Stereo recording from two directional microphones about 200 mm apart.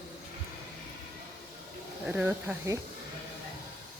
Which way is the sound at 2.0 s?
5° right (ahead or behind).